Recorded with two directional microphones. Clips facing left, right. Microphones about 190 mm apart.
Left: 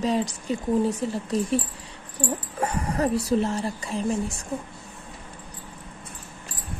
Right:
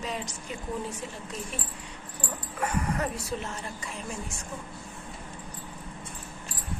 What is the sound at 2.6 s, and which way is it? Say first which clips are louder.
A woman's voice: left 4 dB; 30° left (ahead or behind).